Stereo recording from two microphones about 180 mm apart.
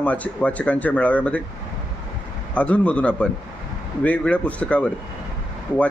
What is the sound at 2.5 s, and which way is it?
A man's voice, 5° left (ahead or behind).